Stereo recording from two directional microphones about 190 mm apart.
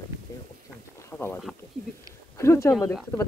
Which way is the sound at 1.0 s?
10° left (ahead or behind).